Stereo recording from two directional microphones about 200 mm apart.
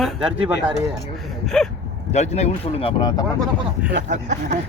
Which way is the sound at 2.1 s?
35° left (ahead or behind).